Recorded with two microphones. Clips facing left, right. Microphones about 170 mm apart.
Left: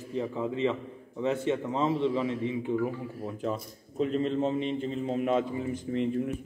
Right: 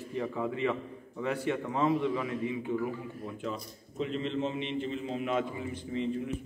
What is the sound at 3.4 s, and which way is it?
A man's voice, 45° left (ahead or behind).